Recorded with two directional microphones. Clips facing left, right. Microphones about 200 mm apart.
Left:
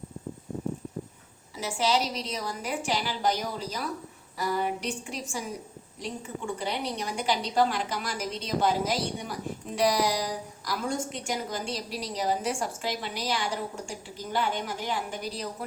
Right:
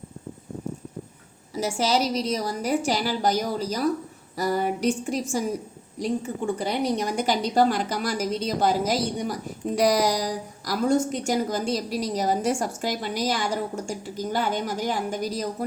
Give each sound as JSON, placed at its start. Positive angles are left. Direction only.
{"t": 1.5, "sound": "a woman's voice", "side_deg": -40}